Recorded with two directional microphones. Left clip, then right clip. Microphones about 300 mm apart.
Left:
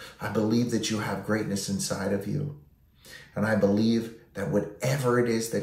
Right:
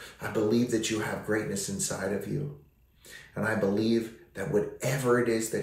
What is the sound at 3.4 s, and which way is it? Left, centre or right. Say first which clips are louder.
Speech: left 3 dB; centre.